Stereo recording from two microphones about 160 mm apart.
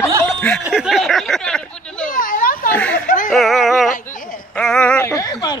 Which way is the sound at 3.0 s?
55° left (ahead or behind).